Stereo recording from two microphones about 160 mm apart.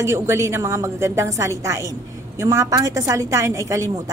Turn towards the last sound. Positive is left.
turn(degrees=-20)  # may be behind; listen again after turning